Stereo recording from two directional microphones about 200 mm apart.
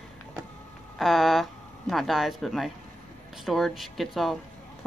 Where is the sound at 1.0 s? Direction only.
Centre (ahead or behind).